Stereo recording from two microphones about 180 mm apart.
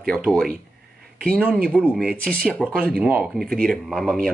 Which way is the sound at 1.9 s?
5° left (ahead or behind).